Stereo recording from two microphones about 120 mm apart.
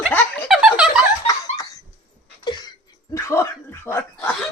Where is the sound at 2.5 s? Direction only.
40° left (ahead or behind).